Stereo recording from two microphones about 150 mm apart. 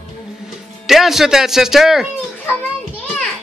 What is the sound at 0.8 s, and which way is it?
Speech, centre (ahead or behind).